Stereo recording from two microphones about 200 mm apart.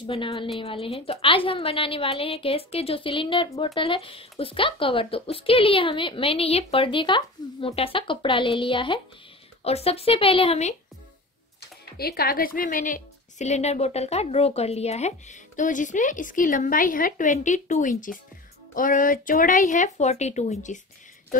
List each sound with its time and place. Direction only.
0.0 s a woman's voice: 25° left (ahead or behind)
12.0 s a woman's voice: 50° left (ahead or behind)